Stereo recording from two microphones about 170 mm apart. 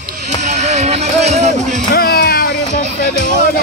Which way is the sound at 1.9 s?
65° left (ahead or behind).